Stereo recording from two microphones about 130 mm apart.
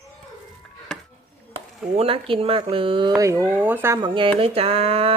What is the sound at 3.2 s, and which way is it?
Stir, 20° right (ahead or behind).